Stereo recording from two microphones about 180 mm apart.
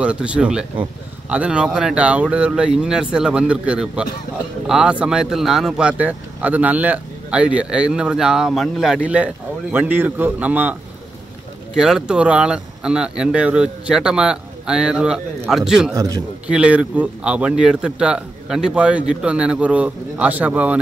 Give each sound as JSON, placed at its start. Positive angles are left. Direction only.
{"t": 0.0, "sound": "speech", "side_deg": -5}
{"t": 15.9, "sound": "a man's voice", "side_deg": -20}
{"t": 16.4, "sound": "speech", "side_deg": -5}